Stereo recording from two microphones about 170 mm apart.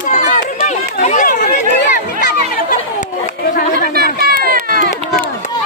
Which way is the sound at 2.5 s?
50° left (ahead or behind).